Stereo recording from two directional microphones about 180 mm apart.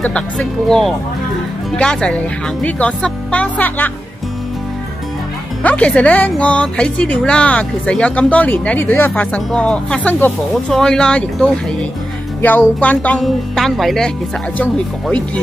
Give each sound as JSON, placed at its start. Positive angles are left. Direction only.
{"t": 0.0, "sound": "speech", "side_deg": 5}
{"t": 5.6, "sound": "speech", "side_deg": 10}